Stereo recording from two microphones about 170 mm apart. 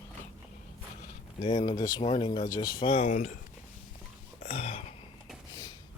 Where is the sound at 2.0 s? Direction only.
35° left (ahead or behind).